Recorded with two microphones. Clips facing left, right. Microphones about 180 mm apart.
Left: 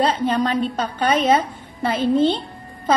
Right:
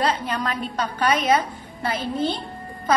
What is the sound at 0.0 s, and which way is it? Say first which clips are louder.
A woman's voice: left 5 dB; 30° left (ahead or behind).